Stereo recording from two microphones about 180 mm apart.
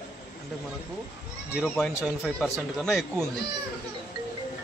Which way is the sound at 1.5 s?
5° right (ahead or behind).